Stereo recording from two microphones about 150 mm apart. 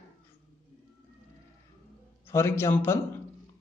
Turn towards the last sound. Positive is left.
turn(degrees=15)  # may be behind; listen again after turning